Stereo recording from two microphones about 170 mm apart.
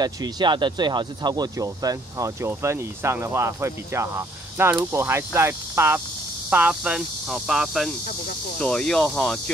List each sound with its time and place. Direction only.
0.0 s speech: 25° right (ahead or behind); by 9.4 s centre (ahead or behind)